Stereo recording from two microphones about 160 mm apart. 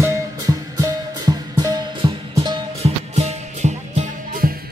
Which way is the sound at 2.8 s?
45° right (ahead or behind).